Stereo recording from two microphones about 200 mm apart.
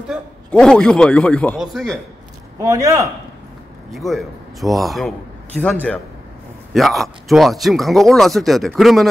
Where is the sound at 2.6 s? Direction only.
15° right (ahead or behind).